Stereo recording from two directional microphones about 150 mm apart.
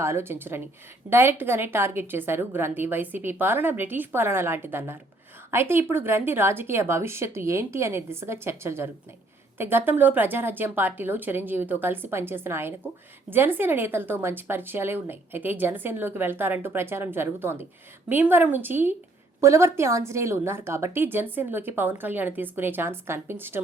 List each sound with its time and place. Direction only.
0.0 s a woman's voice: 15° right (ahead or behind)